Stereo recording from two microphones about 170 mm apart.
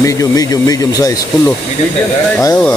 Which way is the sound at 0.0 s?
20° left (ahead or behind).